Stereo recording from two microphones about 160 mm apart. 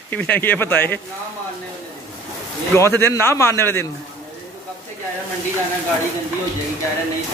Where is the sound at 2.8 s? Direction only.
15° left (ahead or behind).